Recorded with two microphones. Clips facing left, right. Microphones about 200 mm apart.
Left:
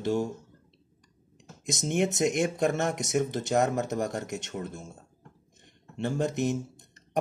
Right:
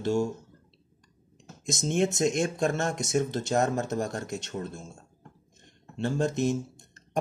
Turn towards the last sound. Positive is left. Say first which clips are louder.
# right 1 dB
turn(degrees=15)  # may be behind; listen again after turning